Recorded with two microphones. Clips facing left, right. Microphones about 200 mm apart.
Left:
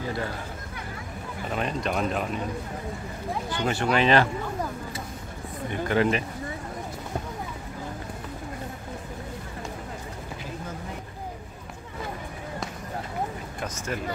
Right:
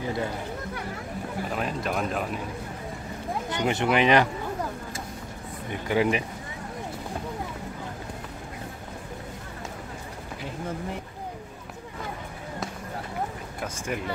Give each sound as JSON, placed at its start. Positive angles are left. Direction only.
{"t": 0.0, "sound": "speech", "side_deg": -20}
{"t": 1.5, "sound": "speech", "side_deg": -5}
{"t": 3.4, "sound": "speech", "side_deg": -20}
{"t": 5.9, "sound": "speech", "side_deg": -10}
{"t": 13.6, "sound": "a sound", "side_deg": -15}